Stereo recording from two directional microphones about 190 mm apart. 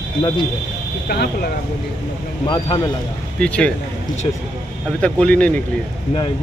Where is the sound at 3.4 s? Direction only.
5° left (ahead or behind).